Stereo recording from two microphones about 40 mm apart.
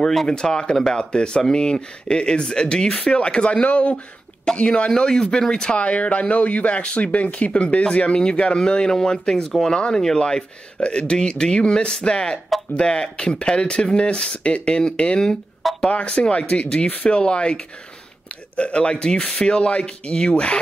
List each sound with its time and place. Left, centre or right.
0.0 s speech: centre
0.3 s speech: centre
2.9 s speech: left
4.9 s speech: centre
5.8 s speech: left